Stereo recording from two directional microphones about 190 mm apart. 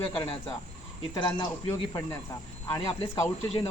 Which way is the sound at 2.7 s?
20° left (ahead or behind).